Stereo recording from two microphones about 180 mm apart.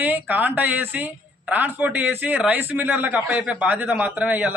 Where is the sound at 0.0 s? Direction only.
10° right (ahead or behind).